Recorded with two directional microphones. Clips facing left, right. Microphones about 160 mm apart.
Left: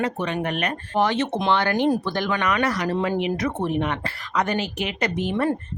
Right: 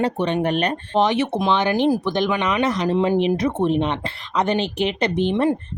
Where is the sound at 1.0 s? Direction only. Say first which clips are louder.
Right 2 dB; 15° right (ahead or behind).